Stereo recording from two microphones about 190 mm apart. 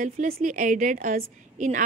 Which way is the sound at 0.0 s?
45° right (ahead or behind).